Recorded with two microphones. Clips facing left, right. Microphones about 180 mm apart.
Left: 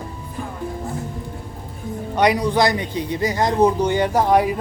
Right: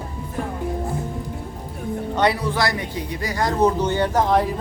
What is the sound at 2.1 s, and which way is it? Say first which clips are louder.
A man's voice: left 4 dB; 15° left (ahead or behind).